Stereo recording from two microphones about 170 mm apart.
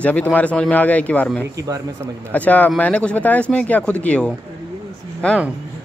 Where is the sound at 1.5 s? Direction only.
20° right (ahead or behind).